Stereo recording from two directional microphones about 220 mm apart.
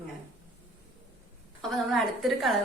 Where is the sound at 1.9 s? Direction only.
Centre (ahead or behind).